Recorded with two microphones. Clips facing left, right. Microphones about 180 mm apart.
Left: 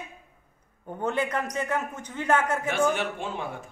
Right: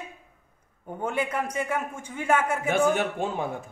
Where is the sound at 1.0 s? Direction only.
10° right (ahead or behind).